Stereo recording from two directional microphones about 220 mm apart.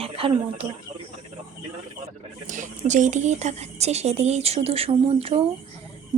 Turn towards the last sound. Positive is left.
turn(degrees=-25)  # may be behind; listen again after turning